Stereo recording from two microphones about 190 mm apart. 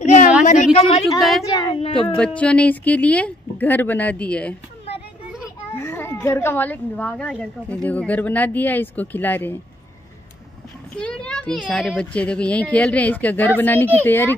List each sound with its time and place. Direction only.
0.0 s a sound: 35° left (ahead or behind)
0.7 s a woman's voice: 30° left (ahead or behind)
2.1 s a woman's voice: 5° left (ahead or behind)
5.8 s a woman's voice: 10° left (ahead or behind)
11.0 s a woman's voice: 5° left (ahead or behind)